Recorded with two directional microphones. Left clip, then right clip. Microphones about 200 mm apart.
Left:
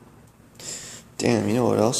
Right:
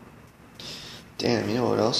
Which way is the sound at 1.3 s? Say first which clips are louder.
Left 3 dB; 40° left (ahead or behind).